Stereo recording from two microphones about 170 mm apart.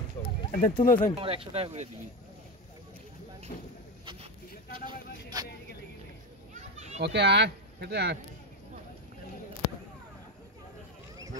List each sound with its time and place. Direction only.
0.6 s speech: 55° left (ahead or behind)
1.1 s speech: 35° right (ahead or behind)
4.0 s a sound: 30° right (ahead or behind)
4.7 s vehicle: 25° right (ahead or behind)
6.5 s children playing: 40° right (ahead or behind)
7.0 s speech: 90° right